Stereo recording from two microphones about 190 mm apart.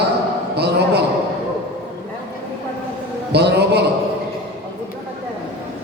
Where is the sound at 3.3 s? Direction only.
60° right (ahead or behind).